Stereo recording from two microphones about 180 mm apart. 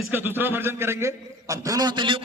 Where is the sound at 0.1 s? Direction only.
10° right (ahead or behind).